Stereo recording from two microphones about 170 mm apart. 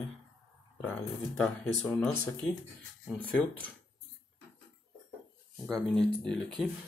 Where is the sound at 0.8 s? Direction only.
10° left (ahead or behind).